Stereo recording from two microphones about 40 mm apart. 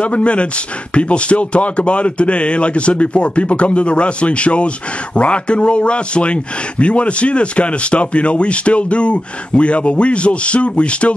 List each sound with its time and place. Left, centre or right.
0.0 s speech: left